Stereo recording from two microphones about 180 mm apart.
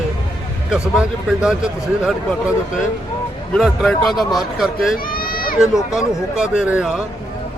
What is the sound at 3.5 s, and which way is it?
Speech, centre (ahead or behind).